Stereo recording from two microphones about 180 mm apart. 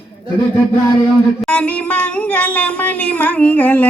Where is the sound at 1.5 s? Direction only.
5° left (ahead or behind).